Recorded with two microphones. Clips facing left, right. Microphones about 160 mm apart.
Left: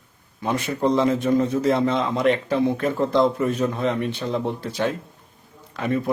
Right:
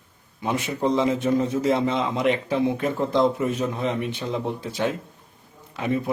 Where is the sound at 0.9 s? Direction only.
10° right (ahead or behind).